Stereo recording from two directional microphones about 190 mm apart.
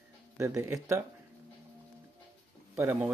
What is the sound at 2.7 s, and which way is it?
Speech, 15° right (ahead or behind).